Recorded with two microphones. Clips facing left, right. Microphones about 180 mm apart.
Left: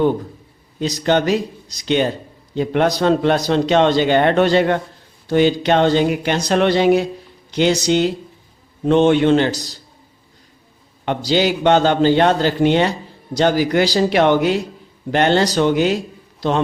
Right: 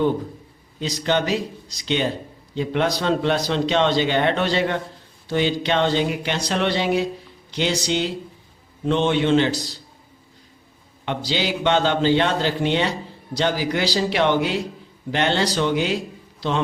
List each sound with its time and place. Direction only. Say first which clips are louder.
0.8 s a man's voice: left 5 dB; 50° left (ahead or behind)
11.0 s a man's voice: left 7 dB; 45° left (ahead or behind)